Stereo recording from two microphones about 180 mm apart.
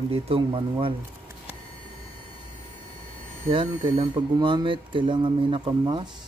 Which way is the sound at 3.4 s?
40° right (ahead or behind).